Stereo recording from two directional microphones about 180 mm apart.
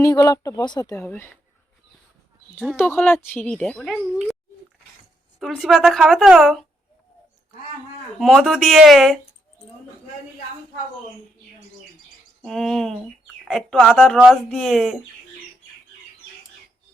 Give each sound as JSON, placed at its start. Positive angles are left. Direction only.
{"t": 0.0, "sound": "speech", "side_deg": 20}
{"t": 2.7, "sound": "a woman's voice", "side_deg": 10}
{"t": 5.4, "sound": "a woman's voice", "side_deg": 0}
{"t": 8.2, "sound": "a woman's voice", "side_deg": 0}
{"t": 12.4, "sound": "a woman's voice", "side_deg": 0}